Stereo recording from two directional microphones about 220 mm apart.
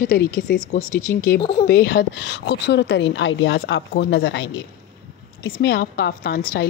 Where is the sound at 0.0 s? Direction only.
40° left (ahead or behind).